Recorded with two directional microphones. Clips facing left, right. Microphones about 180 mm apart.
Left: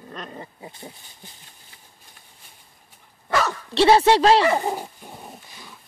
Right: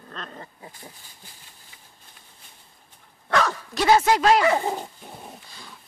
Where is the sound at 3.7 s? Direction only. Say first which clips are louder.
Left 5 dB; 30° left (ahead or behind).